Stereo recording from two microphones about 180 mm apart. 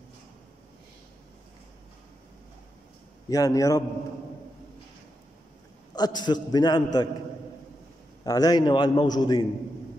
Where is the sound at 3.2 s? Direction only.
20° left (ahead or behind).